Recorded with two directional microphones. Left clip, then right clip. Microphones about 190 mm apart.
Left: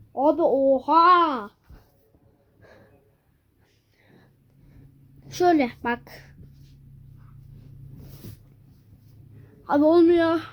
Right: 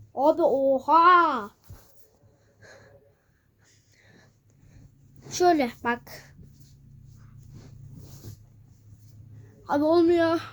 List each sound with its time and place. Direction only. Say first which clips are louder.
0.1 s a child's voice: left 1 dB; 20° right (ahead or behind)
2.6 s a sound: right 2 dB; 25° right (ahead or behind)
5.3 s a woman's voice: left 1 dB; 10° right (ahead or behind)
9.6 s a woman's voice: left 4 dB; 5° left (ahead or behind)
10.2 s speech: left 2 dB; 5° right (ahead or behind)